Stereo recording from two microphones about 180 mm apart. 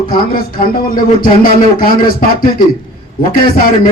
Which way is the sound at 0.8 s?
55° left (ahead or behind).